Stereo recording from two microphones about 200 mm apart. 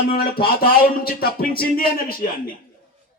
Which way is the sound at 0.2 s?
50° left (ahead or behind).